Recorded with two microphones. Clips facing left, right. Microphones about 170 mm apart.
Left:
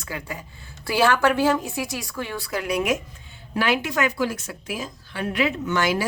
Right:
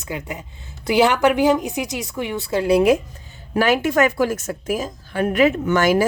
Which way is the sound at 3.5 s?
45° right (ahead or behind).